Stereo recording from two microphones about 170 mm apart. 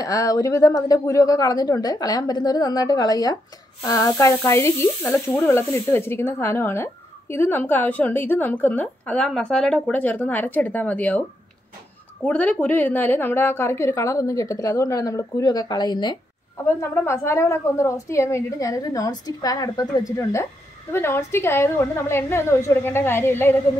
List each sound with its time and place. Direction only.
0.0 s a woman's voice: 20° left (ahead or behind)
12.3 s a woman's voice: 10° left (ahead or behind); by 16.2 s 25° left (ahead or behind)
16.6 s speech: 15° left (ahead or behind)